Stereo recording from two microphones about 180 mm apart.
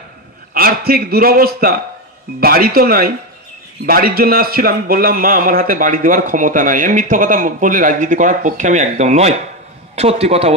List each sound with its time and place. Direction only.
0.6 s a man's voice: 55° right (ahead or behind); by 10.5 s 35° right (ahead or behind)